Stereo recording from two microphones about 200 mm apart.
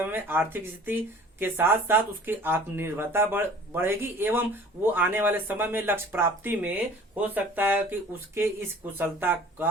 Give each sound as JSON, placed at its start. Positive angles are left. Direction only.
{"t": 0.0, "sound": "speech", "side_deg": -10}
{"t": 9.0, "sound": "speech", "side_deg": -10}